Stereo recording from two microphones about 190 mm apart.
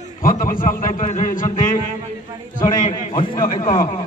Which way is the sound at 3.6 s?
40° left (ahead or behind).